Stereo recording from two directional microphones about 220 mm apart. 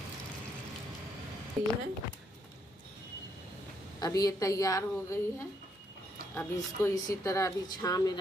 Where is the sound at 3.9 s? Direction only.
15° left (ahead or behind).